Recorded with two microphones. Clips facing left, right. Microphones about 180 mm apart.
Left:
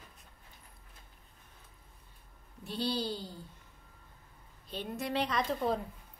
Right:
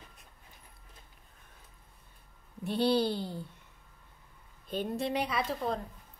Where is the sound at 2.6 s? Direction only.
60° right (ahead or behind).